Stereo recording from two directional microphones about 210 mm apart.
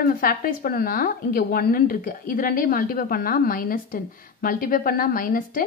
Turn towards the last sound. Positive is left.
turn(degrees=40)  # may be behind; listen again after turning